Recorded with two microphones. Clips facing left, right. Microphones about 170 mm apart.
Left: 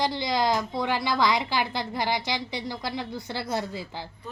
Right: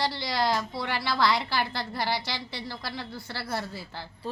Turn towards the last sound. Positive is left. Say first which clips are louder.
# left 4 dB
turn(degrees=15)  # may be behind; listen again after turning